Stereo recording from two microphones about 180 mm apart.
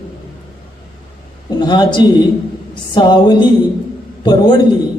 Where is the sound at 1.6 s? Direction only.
25° left (ahead or behind).